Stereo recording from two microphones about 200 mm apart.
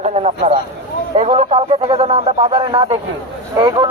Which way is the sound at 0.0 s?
35° right (ahead or behind).